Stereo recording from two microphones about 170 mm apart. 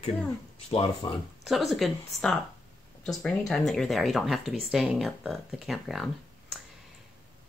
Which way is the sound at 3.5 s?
Centre (ahead or behind).